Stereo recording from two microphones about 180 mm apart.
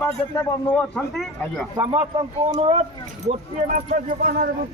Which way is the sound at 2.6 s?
35° right (ahead or behind).